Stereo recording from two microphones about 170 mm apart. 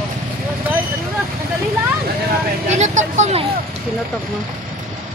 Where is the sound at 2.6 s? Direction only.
45° right (ahead or behind).